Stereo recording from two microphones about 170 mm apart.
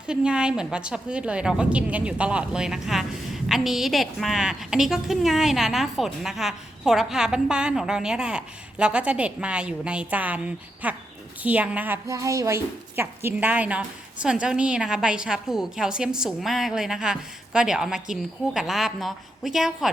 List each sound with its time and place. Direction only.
0.1 s speech: 5° right (ahead or behind)